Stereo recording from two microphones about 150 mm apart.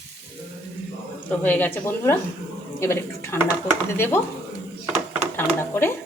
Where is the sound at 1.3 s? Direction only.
10° left (ahead or behind).